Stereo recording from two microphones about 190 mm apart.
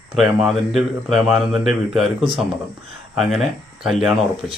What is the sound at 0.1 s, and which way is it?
Speech, centre (ahead or behind).